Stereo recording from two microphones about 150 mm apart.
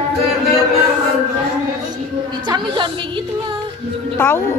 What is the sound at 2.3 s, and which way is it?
Speech, 30° right (ahead or behind).